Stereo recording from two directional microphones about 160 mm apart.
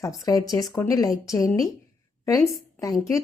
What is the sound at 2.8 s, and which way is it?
Speech, 20° left (ahead or behind).